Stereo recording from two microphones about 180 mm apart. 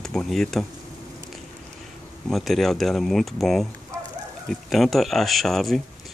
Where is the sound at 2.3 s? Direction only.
Centre (ahead or behind).